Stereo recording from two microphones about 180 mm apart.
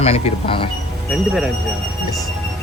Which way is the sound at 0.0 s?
35° left (ahead or behind).